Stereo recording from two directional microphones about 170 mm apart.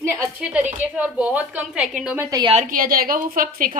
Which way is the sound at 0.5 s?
10° right (ahead or behind).